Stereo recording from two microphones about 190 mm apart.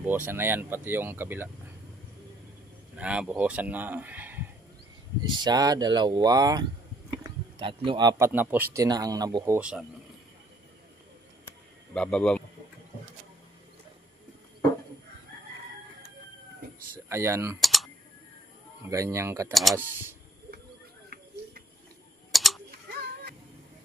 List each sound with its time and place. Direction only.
0.0 s speech: 10° right (ahead or behind)
3.0 s speech: 5° right (ahead or behind)
5.2 s speech: 20° right (ahead or behind)
8.3 s speech: 10° right (ahead or behind)
9.6 s speech: 5° right (ahead or behind)
11.9 s speech: 5° left (ahead or behind)
17.1 s speech: 15° right (ahead or behind)
17.6 s typing: centre (ahead or behind)
18.9 s speech: 15° right (ahead or behind)
19.5 s speech: centre (ahead or behind)
22.3 s a sound: centre (ahead or behind)